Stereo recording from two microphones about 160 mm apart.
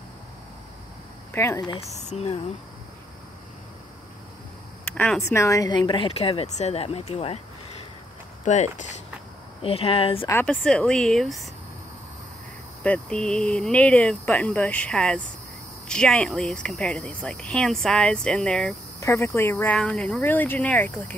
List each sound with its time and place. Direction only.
1.3 s speech: 15° left (ahead or behind)
2.0 s speech: 45° left (ahead or behind)
4.8 s a sound: 5° left (ahead or behind)
5.3 s a woman's voice: 20° left (ahead or behind); by 7.3 s 40° left (ahead or behind)
8.5 s speech: 50° left (ahead or behind)
9.6 s a woman's voice: 35° left (ahead or behind)
10.4 s speech: 5° left (ahead or behind)
12.8 s speech: 5° left (ahead or behind)
18.9 s speech: 15° left (ahead or behind)